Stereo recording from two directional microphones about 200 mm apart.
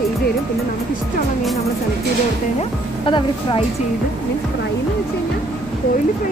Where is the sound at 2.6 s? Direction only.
25° left (ahead or behind).